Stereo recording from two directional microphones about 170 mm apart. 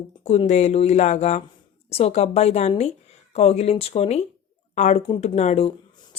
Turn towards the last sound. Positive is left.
turn(degrees=40)  # may be behind; listen again after turning